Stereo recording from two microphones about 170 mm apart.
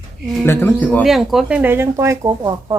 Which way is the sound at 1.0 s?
Centre (ahead or behind).